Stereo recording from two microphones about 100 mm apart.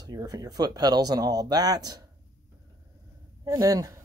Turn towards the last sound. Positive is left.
turn(degrees=-35)  # may be behind; listen again after turning